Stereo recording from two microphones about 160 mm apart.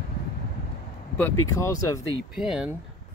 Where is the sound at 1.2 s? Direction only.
20° left (ahead or behind).